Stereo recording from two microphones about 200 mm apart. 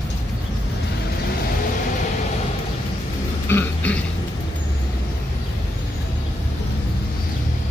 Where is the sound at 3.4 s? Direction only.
10° left (ahead or behind).